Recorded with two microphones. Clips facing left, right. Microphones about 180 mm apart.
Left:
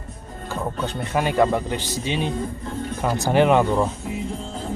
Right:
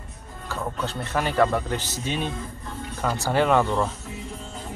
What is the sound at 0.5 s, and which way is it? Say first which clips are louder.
Speech: left 3 dB; 15° left (ahead or behind).